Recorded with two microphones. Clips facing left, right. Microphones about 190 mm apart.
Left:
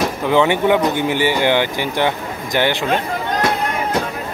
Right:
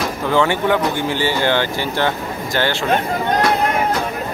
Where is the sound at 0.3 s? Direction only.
20° left (ahead or behind).